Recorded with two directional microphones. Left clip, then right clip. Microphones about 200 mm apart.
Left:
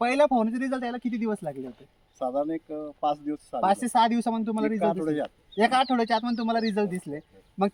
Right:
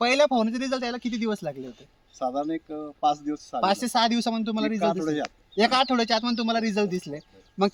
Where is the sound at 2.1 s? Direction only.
15° left (ahead or behind).